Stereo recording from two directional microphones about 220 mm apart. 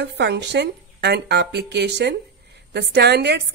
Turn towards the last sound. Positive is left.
turn(degrees=-50)  # may be behind; listen again after turning